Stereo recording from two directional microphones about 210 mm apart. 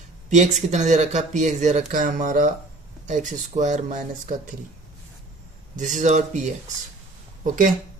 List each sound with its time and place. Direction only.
0.3 s speech: 35° right (ahead or behind)
5.7 s speech: 35° right (ahead or behind)